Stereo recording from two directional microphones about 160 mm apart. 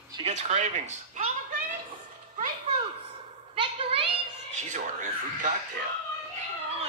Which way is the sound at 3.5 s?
35° right (ahead or behind).